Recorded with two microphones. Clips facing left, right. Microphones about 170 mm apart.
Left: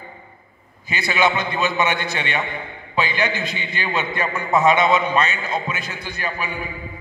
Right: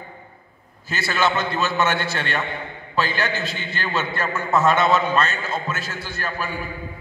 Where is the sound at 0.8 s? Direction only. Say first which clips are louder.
Left 2 dB; 15° left (ahead or behind).